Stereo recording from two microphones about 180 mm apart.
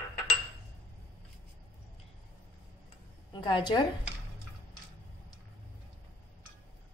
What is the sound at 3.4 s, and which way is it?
Speech, 25° left (ahead or behind).